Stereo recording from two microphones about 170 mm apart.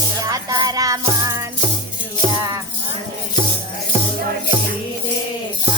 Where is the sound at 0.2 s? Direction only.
20° right (ahead or behind).